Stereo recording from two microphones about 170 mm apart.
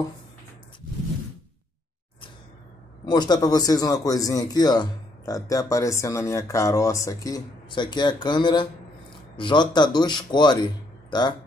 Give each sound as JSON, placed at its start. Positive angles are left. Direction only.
{"t": 3.1, "sound": "speech", "side_deg": 25}